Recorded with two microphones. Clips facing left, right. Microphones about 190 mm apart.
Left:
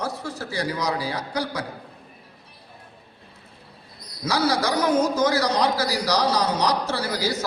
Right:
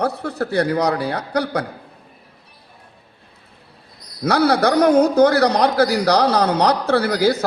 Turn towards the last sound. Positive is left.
turn(degrees=-60)  # may be behind; listen again after turning